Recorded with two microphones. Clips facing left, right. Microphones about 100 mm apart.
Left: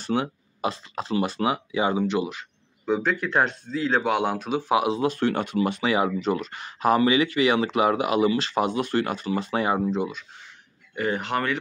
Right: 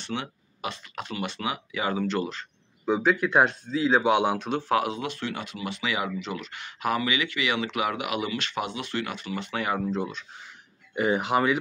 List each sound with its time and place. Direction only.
0.0 s speech: 40° left (ahead or behind); by 2.4 s 15° left (ahead or behind)
2.8 s speech: 5° right (ahead or behind)
4.8 s speech: 30° left (ahead or behind)
5.1 s speech: 50° left (ahead or behind); by 10.0 s 25° left (ahead or behind)
11.0 s speech: 10° right (ahead or behind)